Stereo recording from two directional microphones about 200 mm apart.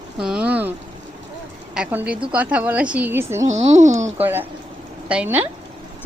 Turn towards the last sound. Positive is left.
turn(degrees=-5)  # may be behind; listen again after turning